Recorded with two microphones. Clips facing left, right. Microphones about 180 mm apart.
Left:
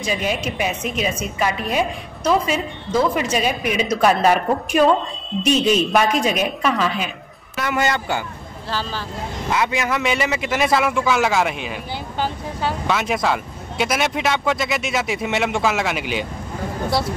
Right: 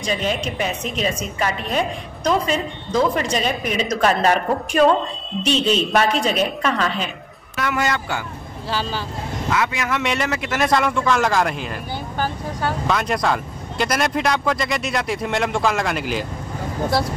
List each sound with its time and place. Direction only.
0.0 s a woman's voice: 10° left (ahead or behind)
8.6 s speech: 10° right (ahead or behind)
9.5 s speech: 20° left (ahead or behind)
9.8 s speech: centre (ahead or behind)
12.8 s speech: 5° left (ahead or behind)